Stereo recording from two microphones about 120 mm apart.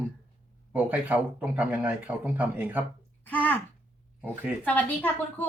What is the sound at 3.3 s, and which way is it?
Speech, 15° left (ahead or behind).